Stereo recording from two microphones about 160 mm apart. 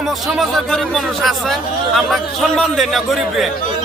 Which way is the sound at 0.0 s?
Centre (ahead or behind).